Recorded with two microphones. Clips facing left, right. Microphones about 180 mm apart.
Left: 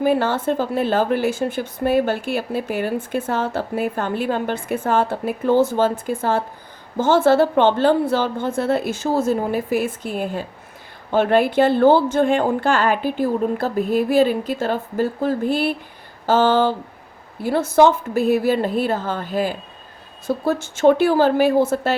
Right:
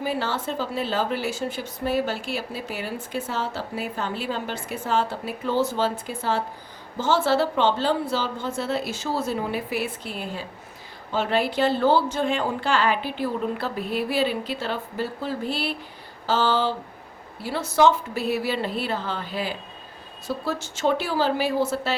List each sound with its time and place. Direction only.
0.0 s speech: 55° left (ahead or behind)